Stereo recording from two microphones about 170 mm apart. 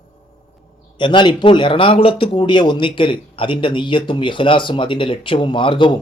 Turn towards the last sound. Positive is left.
turn(degrees=30)  # may be behind; listen again after turning